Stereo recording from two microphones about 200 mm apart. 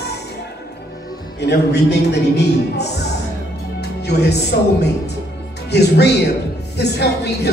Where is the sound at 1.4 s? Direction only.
55° left (ahead or behind).